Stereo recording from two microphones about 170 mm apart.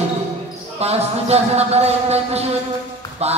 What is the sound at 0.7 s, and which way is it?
Speech, 40° right (ahead or behind).